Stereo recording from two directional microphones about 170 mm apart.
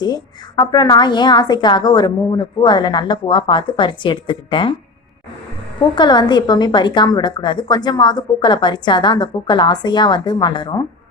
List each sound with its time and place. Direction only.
0.0 s a woman's voice: 25° left (ahead or behind)
6.0 s a woman's voice: 25° left (ahead or behind)